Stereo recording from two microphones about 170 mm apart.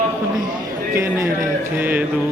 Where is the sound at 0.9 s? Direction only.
15° right (ahead or behind).